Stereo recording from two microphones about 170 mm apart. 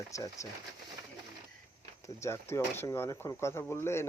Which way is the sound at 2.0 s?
15° left (ahead or behind).